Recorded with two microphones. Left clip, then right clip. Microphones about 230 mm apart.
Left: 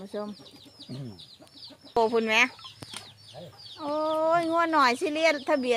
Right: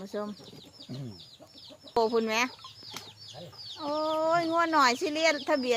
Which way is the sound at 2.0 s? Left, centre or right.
Centre.